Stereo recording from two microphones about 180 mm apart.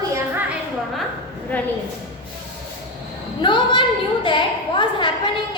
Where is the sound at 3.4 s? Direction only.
25° left (ahead or behind).